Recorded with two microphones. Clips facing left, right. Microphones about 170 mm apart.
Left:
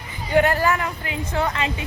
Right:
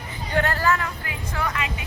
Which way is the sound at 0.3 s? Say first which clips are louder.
Left 4 dB; 15° left (ahead or behind).